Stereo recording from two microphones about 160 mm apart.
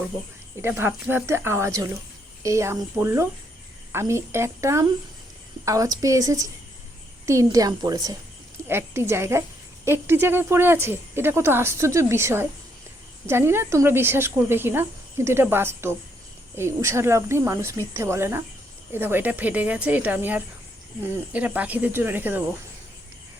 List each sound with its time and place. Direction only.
0.6 s a woman's voice: 15° right (ahead or behind)